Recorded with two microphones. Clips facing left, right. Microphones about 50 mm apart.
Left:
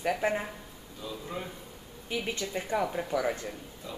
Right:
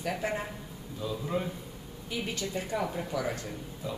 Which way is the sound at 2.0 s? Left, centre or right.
Left.